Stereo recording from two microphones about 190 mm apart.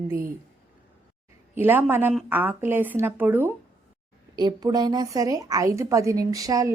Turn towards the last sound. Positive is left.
turn(degrees=-20)  # may be behind; listen again after turning